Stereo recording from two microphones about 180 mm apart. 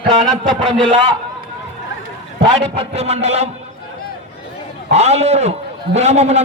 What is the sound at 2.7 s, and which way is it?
Speech, 35° right (ahead or behind).